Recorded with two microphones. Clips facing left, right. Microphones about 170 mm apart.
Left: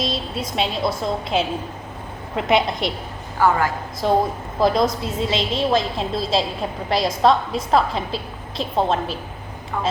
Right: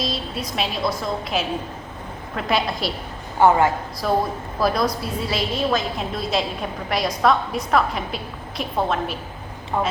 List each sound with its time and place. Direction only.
0.0 s a woman's voice: 25° left (ahead or behind)
3.3 s a woman's voice: 25° right (ahead or behind)
4.0 s a woman's voice: 25° left (ahead or behind)
9.7 s a woman's voice: 20° right (ahead or behind)